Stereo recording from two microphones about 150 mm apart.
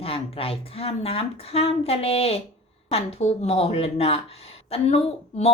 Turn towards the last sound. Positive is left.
turn(degrees=40)  # may be behind; listen again after turning